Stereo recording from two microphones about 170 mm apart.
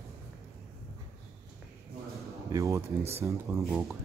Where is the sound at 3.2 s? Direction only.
15° right (ahead or behind).